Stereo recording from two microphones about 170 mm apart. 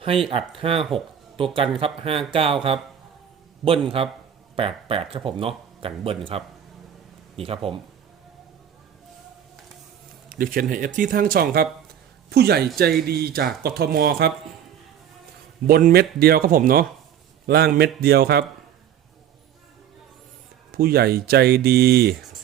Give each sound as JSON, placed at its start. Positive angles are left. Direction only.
{"t": 0.3, "sound": "speech", "side_deg": -35}
{"t": 0.8, "sound": "speech", "side_deg": 0}
{"t": 1.8, "sound": "speech", "side_deg": -35}
{"t": 3.6, "sound": "speech", "side_deg": 0}
{"t": 4.5, "sound": "speech", "side_deg": -35}
{"t": 7.3, "sound": "speech", "side_deg": -35}
{"t": 10.2, "sound": "speech", "side_deg": -55}
{"t": 15.6, "sound": "speech", "side_deg": -60}
{"t": 17.4, "sound": "speech", "side_deg": -70}
{"t": 20.7, "sound": "speech", "side_deg": -65}